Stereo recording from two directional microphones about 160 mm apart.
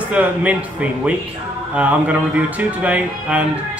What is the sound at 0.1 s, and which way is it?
Speech, 10° right (ahead or behind).